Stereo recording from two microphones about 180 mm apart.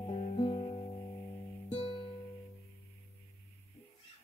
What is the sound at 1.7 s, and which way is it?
Music, 25° left (ahead or behind).